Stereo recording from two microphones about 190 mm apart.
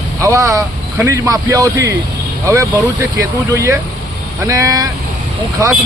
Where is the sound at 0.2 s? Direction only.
15° right (ahead or behind).